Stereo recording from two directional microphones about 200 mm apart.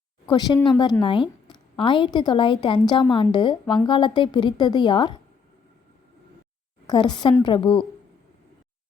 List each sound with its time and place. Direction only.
0.3 s a woman's voice: 20° left (ahead or behind)
6.8 s a woman's voice: 20° left (ahead or behind)